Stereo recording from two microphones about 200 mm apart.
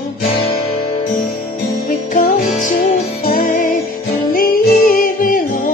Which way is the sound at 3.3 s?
45° left (ahead or behind).